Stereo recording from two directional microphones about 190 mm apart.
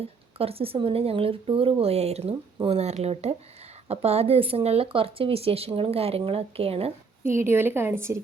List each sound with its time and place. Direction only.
0.0 s speech: 30° right (ahead or behind)
7.3 s a woman's voice: 15° right (ahead or behind)